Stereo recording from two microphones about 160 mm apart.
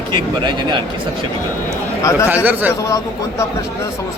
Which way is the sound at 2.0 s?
20° left (ahead or behind).